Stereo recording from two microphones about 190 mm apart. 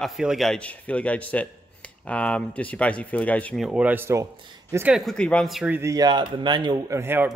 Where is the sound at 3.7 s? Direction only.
5° right (ahead or behind).